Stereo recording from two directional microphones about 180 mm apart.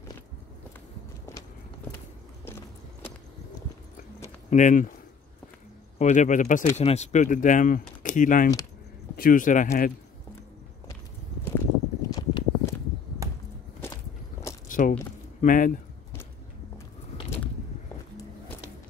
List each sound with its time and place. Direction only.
2.4 s biting: 15° left (ahead or behind)
4.5 s speech: 45° left (ahead or behind)
5.9 s speech: 40° left (ahead or behind)
12.1 s walk: 20° left (ahead or behind)
13.2 s a sound: 20° right (ahead or behind)
14.7 s a sound: 50° left (ahead or behind)
15.4 s speech: 50° left (ahead or behind)